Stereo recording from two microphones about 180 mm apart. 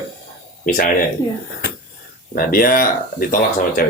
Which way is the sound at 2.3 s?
50° left (ahead or behind).